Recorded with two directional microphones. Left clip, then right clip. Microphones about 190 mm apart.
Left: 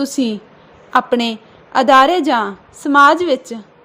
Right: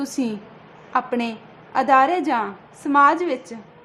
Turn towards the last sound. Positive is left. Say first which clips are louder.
# left 7 dB
turn(degrees=25)  # may be behind; listen again after turning